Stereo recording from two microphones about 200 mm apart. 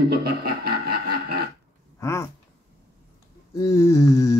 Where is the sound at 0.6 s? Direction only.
50° right (ahead or behind).